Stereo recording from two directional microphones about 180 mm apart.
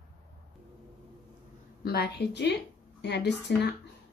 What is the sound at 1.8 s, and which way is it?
A woman's voice, 65° left (ahead or behind).